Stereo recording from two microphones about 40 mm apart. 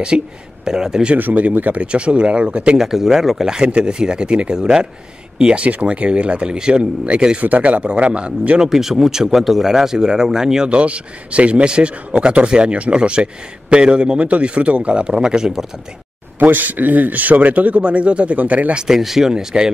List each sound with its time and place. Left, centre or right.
0.1 s speech: right
0.7 s speech: centre
1.1 s speech: right
1.8 s speech: right
2.8 s speech: centre
7.3 s speech: right
7.8 s speech: right
8.6 s speech: centre
10.8 s speech: right; by 15.6 s centre
16.3 s speech: right
18.9 s speech: centre